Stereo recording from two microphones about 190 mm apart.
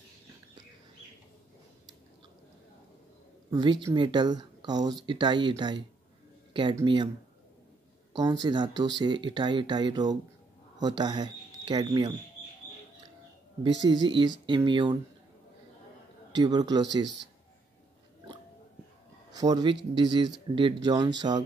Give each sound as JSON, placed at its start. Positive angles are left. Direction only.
{"t": 3.4, "sound": "speech", "side_deg": -20}
{"t": 8.2, "sound": "speech", "side_deg": -20}
{"t": 13.6, "sound": "speech", "side_deg": -20}
{"t": 16.3, "sound": "speech", "side_deg": -20}
{"t": 19.3, "sound": "speech", "side_deg": -20}